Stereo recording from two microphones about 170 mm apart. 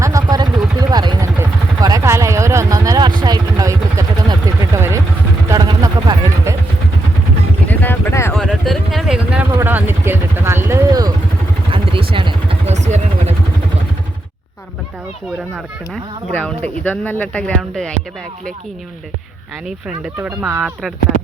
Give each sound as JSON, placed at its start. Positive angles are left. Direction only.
{"t": 0.0, "sound": "vehicle", "side_deg": -20}
{"t": 5.5, "sound": "a sound", "side_deg": -20}
{"t": 7.7, "sound": "vehicle", "side_deg": 10}
{"t": 8.3, "sound": "a sound", "side_deg": 0}
{"t": 9.6, "sound": "vehicle", "side_deg": -10}
{"t": 11.7, "sound": "vehicle", "side_deg": -30}
{"t": 16.3, "sound": "speech", "side_deg": 10}
{"t": 20.1, "sound": "speech", "side_deg": -10}